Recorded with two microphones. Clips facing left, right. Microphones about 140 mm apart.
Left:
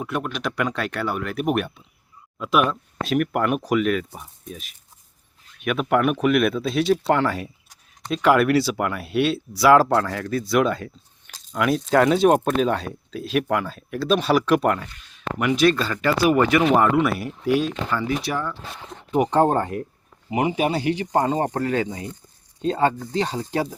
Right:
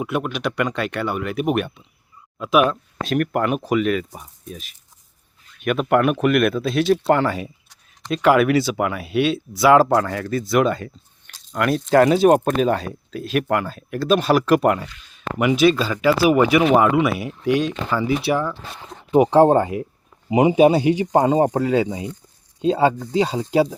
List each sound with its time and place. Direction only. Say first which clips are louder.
0.0 s speech: right 3 dB; 5° right (ahead or behind)
20.3 s speech: right 8 dB; 20° right (ahead or behind)